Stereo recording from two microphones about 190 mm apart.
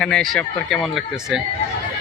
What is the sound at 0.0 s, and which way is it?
A man's voice, 5° left (ahead or behind).